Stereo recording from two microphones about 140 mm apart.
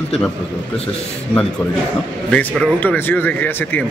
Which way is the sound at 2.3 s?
10° left (ahead or behind).